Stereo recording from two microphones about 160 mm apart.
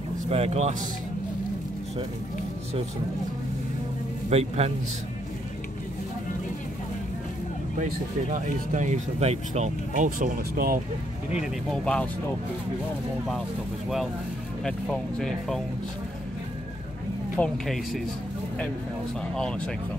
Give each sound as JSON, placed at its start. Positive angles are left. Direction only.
{"t": 0.3, "sound": "speech", "side_deg": -40}
{"t": 4.3, "sound": "a man's voice", "side_deg": -40}
{"t": 7.8, "sound": "speech", "side_deg": -50}
{"t": 11.3, "sound": "speech", "side_deg": 5}
{"t": 14.6, "sound": "speech", "side_deg": 5}
{"t": 17.4, "sound": "speech", "side_deg": 0}